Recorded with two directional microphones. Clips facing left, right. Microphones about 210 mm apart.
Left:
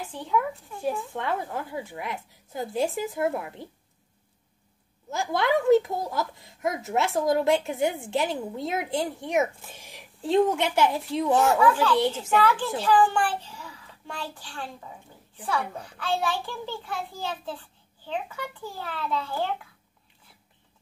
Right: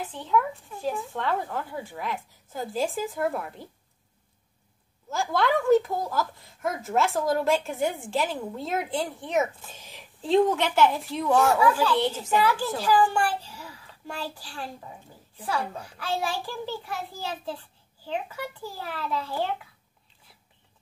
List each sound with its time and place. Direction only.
0.0 s a woman's voice: 10° left (ahead or behind)
5.1 s a woman's voice: 20° left (ahead or behind)
11.3 s a child's voice: 5° right (ahead or behind)